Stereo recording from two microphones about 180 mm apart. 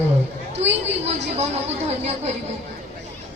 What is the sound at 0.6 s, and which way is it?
Speech, 40° right (ahead or behind).